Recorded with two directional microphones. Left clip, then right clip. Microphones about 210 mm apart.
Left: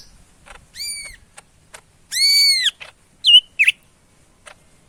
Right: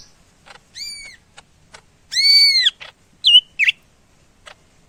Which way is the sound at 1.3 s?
5° left (ahead or behind).